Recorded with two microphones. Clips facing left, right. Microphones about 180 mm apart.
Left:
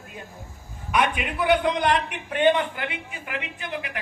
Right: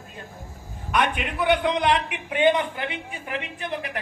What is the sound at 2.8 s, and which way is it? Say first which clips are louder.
Speech: right 1 dB; 25° right (ahead or behind).